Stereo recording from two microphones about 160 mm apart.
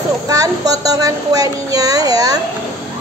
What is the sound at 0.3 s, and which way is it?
A woman's voice, 20° right (ahead or behind).